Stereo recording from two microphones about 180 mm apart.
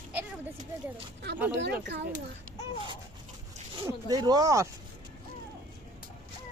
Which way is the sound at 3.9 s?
20° right (ahead or behind).